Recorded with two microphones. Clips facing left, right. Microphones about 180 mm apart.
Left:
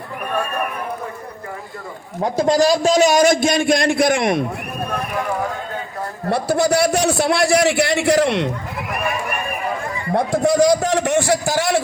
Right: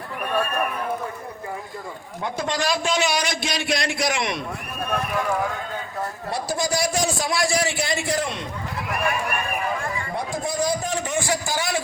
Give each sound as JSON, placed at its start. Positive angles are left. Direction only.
{"t": 2.2, "sound": "a man's voice", "side_deg": 35}
{"t": 6.3, "sound": "a man's voice", "side_deg": 65}
{"t": 10.2, "sound": "a man's voice", "side_deg": 70}